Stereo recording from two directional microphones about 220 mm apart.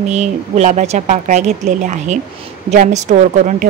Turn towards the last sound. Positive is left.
turn(degrees=-30)  # may be behind; listen again after turning